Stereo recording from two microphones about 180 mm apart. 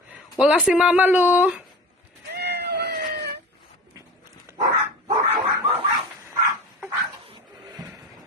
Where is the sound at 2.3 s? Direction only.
65° right (ahead or behind).